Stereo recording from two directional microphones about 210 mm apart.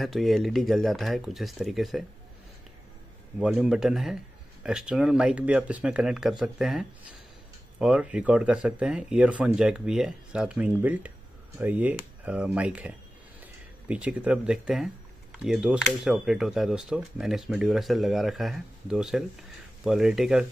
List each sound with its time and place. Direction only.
0.0 s speech: centre (ahead or behind)
3.3 s speech: 5° right (ahead or behind)